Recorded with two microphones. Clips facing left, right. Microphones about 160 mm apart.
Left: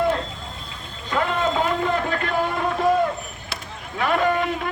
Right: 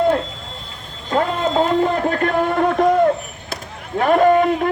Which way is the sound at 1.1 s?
35° right (ahead or behind).